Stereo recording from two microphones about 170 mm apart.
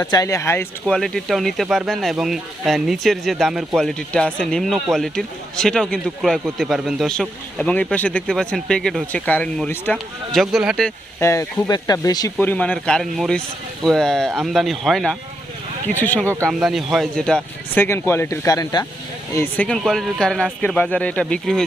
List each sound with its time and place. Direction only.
0.0 s speech: 20° left (ahead or behind)
0.9 s speech: 5° left (ahead or behind)
11.2 s speech: 15° left (ahead or behind)
12.5 s speech: 10° left (ahead or behind)
16.4 s speech: centre (ahead or behind); by 18.9 s 20° left (ahead or behind)
19.4 s speech: 5° left (ahead or behind)